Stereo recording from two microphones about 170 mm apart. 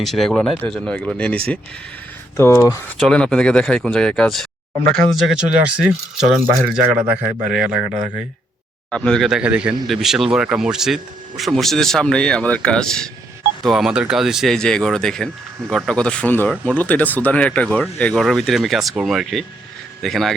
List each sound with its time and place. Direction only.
0.0 s a man's voice: centre (ahead or behind)
3.0 s a man's voice: 5° left (ahead or behind)